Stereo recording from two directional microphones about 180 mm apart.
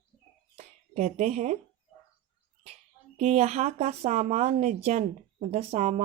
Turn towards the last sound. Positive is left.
turn(degrees=-40)  # may be behind; listen again after turning